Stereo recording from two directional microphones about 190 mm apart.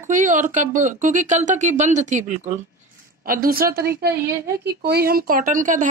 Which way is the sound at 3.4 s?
50° right (ahead or behind).